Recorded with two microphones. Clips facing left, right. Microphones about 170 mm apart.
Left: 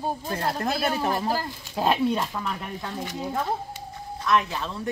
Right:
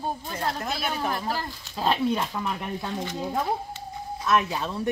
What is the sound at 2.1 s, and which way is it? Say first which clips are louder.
Speech: even; centre (ahead or behind).